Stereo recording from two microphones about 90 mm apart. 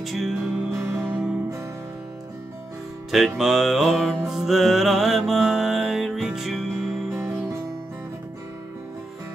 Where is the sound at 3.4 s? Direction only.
Centre (ahead or behind).